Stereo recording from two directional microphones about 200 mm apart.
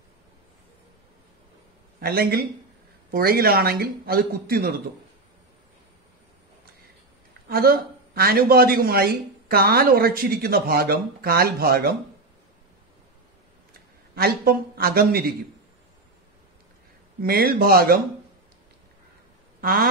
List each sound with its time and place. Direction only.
2.0 s speech: 50° right (ahead or behind)
7.4 s speech: 45° right (ahead or behind)
14.1 s speech: 50° right (ahead or behind)
17.2 s speech: 50° right (ahead or behind)
19.6 s speech: 50° right (ahead or behind)